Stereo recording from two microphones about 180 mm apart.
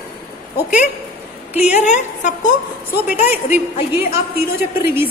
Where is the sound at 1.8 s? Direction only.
40° left (ahead or behind).